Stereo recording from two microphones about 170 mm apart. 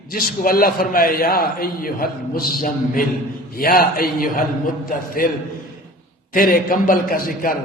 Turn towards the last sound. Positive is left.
turn(degrees=60)  # may be behind; listen again after turning